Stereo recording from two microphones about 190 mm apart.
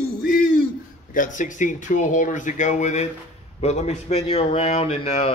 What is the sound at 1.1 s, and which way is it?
Speech, 45° left (ahead or behind).